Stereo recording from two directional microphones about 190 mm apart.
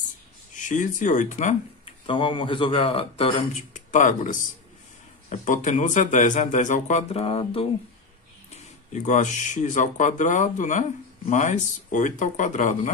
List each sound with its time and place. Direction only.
0.6 s speech: 40° left (ahead or behind)
1.9 s speech: 25° left (ahead or behind)